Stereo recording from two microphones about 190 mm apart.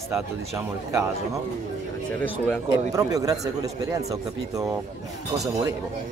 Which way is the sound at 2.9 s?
20° right (ahead or behind).